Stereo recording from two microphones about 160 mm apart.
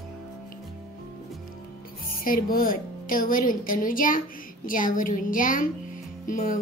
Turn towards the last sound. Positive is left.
turn(degrees=55)  # may be behind; listen again after turning